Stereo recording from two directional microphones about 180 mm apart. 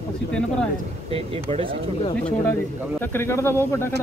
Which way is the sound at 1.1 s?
30° right (ahead or behind).